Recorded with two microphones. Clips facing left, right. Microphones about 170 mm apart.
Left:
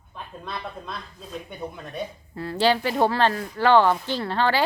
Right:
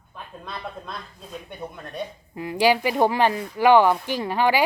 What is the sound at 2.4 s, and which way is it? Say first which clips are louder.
Speech: right 2 dB; 15° right (ahead or behind).